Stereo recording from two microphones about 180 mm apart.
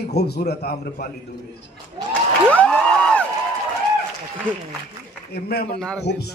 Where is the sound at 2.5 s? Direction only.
5° left (ahead or behind).